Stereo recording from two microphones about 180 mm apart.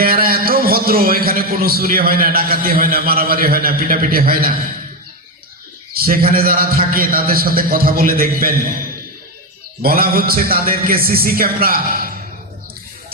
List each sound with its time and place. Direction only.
0.0 s a man's voice: 55° right (ahead or behind)
5.9 s a man's voice: 55° right (ahead or behind)
9.8 s a man's voice: 55° right (ahead or behind)